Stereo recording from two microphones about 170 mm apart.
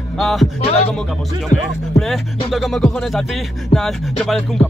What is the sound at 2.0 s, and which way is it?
Speech, centre (ahead or behind).